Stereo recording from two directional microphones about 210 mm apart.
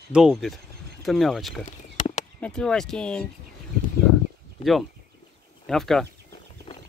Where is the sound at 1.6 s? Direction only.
35° left (ahead or behind).